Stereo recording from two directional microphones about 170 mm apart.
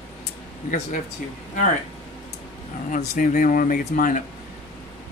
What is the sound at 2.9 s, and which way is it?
Speech, 50° left (ahead or behind).